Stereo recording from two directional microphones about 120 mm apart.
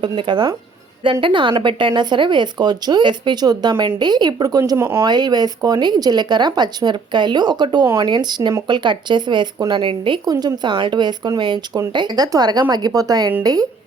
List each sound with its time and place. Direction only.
0.0 s speech: 40° right (ahead or behind)
4.8 s speech: 20° right (ahead or behind)
5.0 s speech: 35° right (ahead or behind)
10.2 s speech: 35° right (ahead or behind)